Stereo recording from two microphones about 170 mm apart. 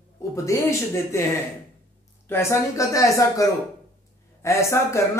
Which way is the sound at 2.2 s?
15° left (ahead or behind).